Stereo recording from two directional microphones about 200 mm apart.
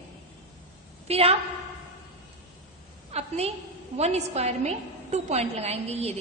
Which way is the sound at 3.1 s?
30° right (ahead or behind).